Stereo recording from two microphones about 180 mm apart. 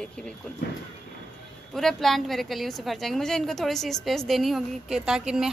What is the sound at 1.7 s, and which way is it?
A woman's voice, centre (ahead or behind).